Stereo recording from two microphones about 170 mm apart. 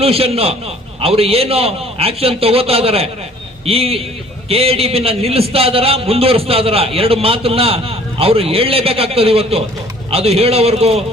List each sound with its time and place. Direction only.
0.0 s a man's voice: 35° right (ahead or behind)